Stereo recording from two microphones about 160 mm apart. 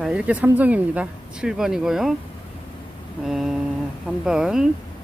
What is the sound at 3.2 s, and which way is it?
Speech, centre (ahead or behind).